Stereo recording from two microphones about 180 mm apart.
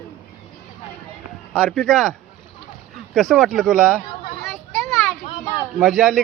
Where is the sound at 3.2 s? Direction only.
Centre (ahead or behind).